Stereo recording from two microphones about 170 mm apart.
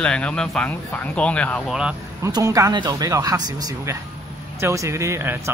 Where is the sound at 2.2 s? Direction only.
20° right (ahead or behind).